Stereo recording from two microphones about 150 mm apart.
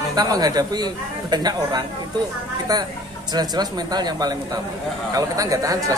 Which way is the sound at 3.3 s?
25° right (ahead or behind).